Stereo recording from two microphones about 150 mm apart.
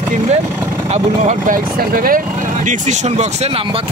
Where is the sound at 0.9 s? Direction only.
50° right (ahead or behind).